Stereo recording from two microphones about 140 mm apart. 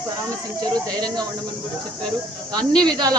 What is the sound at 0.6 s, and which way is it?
Speech, 30° right (ahead or behind).